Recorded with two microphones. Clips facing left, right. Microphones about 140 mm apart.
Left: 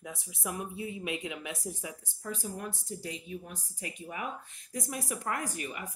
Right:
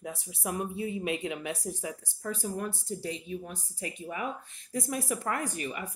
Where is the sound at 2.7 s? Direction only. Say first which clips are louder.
Right 4 dB; 30° right (ahead or behind).